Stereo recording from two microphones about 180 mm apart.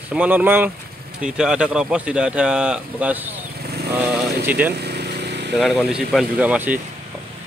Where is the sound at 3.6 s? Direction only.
60° right (ahead or behind).